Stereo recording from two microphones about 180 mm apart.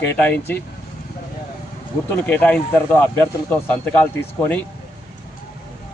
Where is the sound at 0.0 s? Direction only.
10° left (ahead or behind).